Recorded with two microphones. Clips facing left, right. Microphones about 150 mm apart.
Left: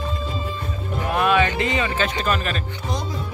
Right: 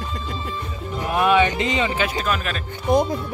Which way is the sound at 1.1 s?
15° right (ahead or behind).